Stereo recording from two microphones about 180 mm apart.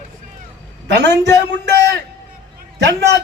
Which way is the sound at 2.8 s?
75° right (ahead or behind).